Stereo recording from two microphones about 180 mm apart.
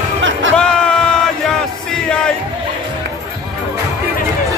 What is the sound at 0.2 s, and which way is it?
Music, 90° right.